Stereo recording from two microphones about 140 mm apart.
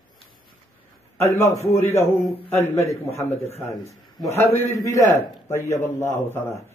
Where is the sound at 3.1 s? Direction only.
50° left (ahead or behind).